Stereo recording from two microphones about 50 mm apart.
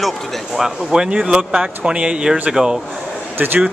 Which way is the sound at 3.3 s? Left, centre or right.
Right.